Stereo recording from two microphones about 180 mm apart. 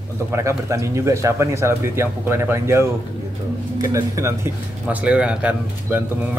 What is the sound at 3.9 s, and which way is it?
A man's voice, 15° right (ahead or behind).